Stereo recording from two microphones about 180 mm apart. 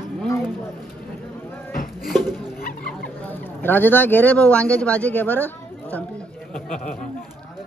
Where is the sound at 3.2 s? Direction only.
10° left (ahead or behind).